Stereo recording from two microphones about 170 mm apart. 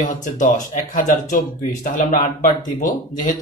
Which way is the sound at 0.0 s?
50° left (ahead or behind).